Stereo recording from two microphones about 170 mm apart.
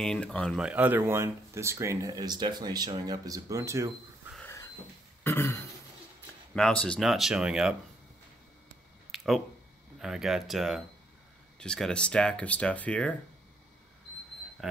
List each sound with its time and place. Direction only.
0.0 s speech: 5° left (ahead or behind)
0.6 s speech: 5° right (ahead or behind)
4.4 s a sound: 15° left (ahead or behind)
5.2 s throat clearing: 15° left (ahead or behind)
6.5 s speech: 5° left (ahead or behind)
9.1 s a sound: centre (ahead or behind)
9.9 s speech: 5° right (ahead or behind)
14.6 s speech: centre (ahead or behind)